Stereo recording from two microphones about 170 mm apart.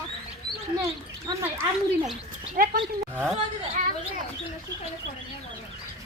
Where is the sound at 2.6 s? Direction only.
55° right (ahead or behind).